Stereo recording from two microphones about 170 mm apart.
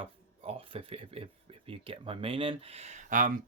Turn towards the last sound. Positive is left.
turn(degrees=-50)  # may be behind; listen again after turning